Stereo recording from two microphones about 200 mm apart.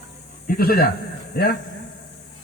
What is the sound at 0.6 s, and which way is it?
Speech, 50° left (ahead or behind).